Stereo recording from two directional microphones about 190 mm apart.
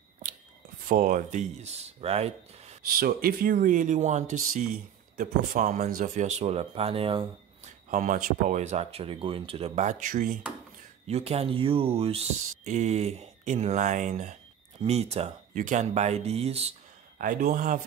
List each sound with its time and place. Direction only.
0.8 s speech: 45° right (ahead or behind)
2.9 s speech: 50° right (ahead or behind); by 7.7 s 30° right (ahead or behind)
7.9 s speech: 45° right (ahead or behind)
17.2 s speech: 45° right (ahead or behind)